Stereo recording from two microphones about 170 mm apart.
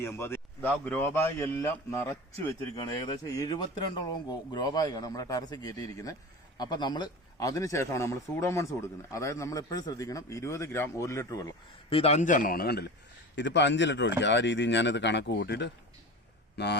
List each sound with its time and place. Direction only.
0.0 s a man's voice: 15° left (ahead or behind)
11.9 s a man's voice: 35° left (ahead or behind); by 12.9 s 70° left (ahead or behind)
13.3 s speech: 90° left